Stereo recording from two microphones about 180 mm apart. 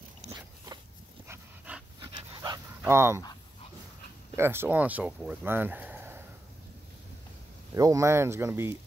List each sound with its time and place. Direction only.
0.3 s dog: 20° right (ahead or behind)
2.0 s dog: 25° right (ahead or behind)
2.8 s speech: 15° right (ahead or behind)
4.4 s speech: 15° right (ahead or behind)
7.7 s speech: 20° right (ahead or behind)